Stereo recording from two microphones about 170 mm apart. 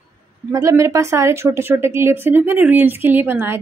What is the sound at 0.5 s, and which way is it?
Speech, 20° right (ahead or behind).